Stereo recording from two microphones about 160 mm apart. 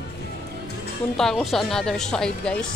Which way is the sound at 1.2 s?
5° left (ahead or behind).